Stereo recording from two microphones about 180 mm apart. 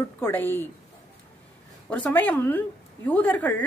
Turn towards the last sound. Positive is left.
turn(degrees=10)  # may be behind; listen again after turning